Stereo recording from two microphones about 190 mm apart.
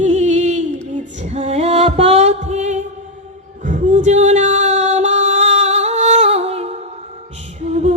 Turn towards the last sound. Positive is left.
turn(degrees=-35)  # may be behind; listen again after turning